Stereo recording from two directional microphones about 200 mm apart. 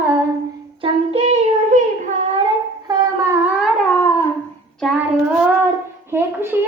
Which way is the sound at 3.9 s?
15° left (ahead or behind).